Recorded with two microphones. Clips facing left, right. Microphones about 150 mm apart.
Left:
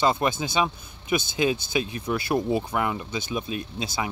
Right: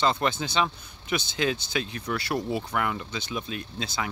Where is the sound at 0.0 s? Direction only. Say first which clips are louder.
Left 2 dB; 15° left (ahead or behind).